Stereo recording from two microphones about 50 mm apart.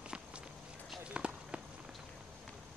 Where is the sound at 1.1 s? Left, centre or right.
Right.